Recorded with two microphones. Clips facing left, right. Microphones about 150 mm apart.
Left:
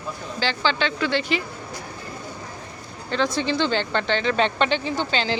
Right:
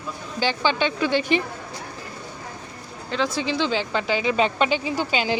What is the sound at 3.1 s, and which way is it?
Speech, centre (ahead or behind).